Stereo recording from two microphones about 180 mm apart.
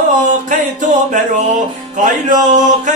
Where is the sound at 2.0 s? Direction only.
45° right (ahead or behind).